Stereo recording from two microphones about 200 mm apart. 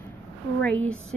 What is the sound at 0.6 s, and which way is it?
Speech, 5° left (ahead or behind).